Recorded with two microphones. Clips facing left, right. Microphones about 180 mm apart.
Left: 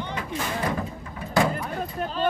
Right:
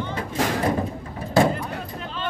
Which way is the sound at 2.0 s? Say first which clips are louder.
Left 10 dB; 45° left (ahead or behind).